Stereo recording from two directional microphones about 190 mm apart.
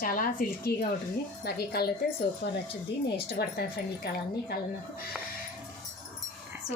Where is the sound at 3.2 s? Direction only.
55° left (ahead or behind).